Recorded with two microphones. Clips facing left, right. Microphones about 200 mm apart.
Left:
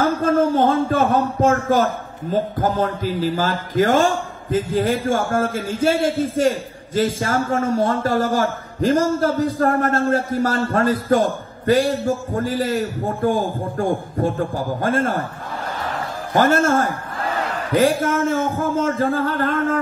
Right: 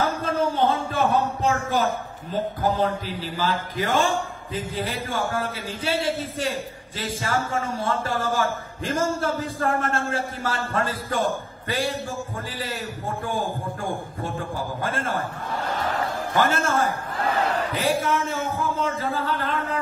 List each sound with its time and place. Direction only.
0.0 s a sound: 45° left (ahead or behind)
2.3 s a man's voice: 45° left (ahead or behind)
16.3 s a man's voice: 40° left (ahead or behind)
18.1 s a man's voice: 45° left (ahead or behind)